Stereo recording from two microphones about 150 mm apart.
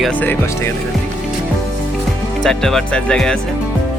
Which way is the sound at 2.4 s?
5° left (ahead or behind).